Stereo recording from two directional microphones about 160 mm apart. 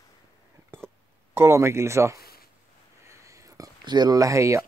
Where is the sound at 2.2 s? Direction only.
70° left (ahead or behind).